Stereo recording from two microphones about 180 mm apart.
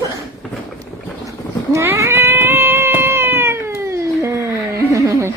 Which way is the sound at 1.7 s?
15° right (ahead or behind).